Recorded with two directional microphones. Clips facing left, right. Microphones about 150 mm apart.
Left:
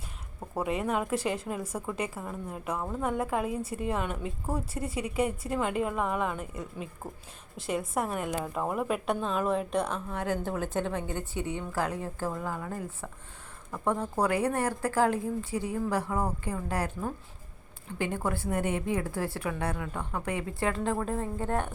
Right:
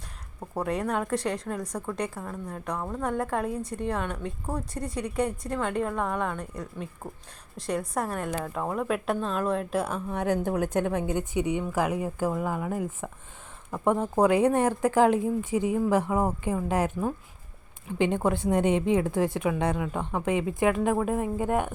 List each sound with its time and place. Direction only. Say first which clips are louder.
0.5 s a woman's voice: right 1 dB; centre (ahead or behind); by 21.7 s 15° right (ahead or behind)